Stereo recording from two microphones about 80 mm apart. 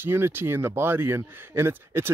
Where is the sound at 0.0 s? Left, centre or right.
Right.